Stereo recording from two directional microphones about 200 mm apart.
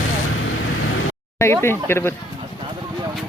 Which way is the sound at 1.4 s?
10° left (ahead or behind).